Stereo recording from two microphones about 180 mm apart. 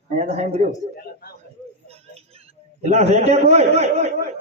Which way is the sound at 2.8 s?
40° right (ahead or behind).